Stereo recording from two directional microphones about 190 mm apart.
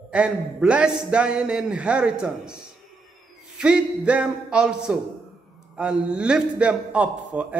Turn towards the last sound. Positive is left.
turn(degrees=-5)  # may be behind; listen again after turning